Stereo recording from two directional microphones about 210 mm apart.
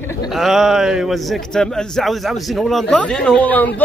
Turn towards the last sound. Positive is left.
turn(degrees=10)  # may be behind; listen again after turning